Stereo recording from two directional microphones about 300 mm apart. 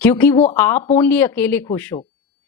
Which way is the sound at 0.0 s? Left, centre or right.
Centre.